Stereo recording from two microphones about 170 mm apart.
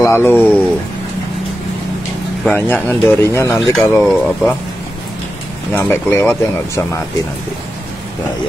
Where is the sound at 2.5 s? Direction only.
10° left (ahead or behind).